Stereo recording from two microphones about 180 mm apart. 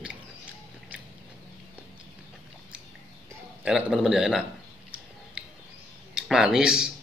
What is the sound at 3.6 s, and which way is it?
Speech, 5° right (ahead or behind).